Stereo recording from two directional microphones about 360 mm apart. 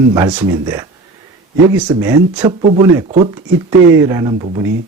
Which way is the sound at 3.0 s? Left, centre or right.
Centre.